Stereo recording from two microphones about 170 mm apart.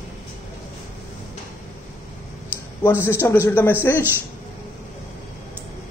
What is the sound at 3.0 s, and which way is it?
Speech, 15° left (ahead or behind).